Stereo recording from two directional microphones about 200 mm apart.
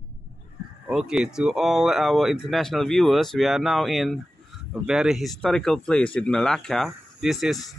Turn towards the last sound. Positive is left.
turn(degrees=0)  # may be behind; listen again after turning